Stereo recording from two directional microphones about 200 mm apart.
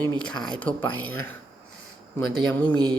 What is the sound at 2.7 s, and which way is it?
Music, 20° right (ahead or behind).